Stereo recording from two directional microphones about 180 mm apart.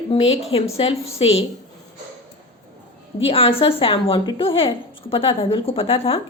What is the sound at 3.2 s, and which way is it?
A woman's voice, 30° left (ahead or behind).